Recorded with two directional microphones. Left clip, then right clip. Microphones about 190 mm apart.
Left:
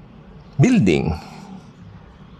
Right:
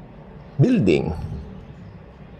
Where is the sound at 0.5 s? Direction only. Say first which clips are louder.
Left 1 dB; 15° left (ahead or behind).